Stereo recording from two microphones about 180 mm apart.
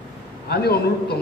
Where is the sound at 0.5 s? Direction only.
60° left (ahead or behind).